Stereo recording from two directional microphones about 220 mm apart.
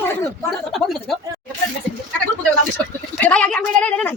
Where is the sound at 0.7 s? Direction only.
Centre (ahead or behind).